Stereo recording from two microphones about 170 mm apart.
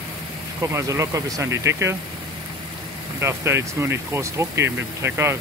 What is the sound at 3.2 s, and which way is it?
Speech, 15° right (ahead or behind).